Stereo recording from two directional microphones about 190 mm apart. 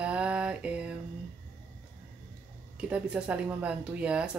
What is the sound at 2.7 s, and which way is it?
Speech, 5° right (ahead or behind).